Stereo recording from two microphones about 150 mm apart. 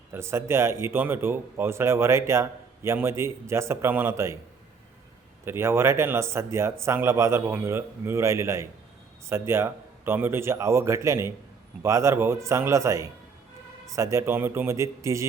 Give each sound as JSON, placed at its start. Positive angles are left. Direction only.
{"t": 0.1, "sound": "a man's voice", "side_deg": -15}
{"t": 5.5, "sound": "a man's voice", "side_deg": -15}